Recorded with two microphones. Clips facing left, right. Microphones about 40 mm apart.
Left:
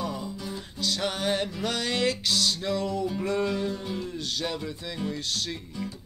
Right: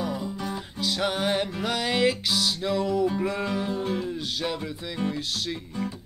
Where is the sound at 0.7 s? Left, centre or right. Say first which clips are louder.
Right 2 dB; centre.